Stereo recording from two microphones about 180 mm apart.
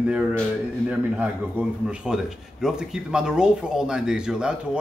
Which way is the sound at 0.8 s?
5° right (ahead or behind).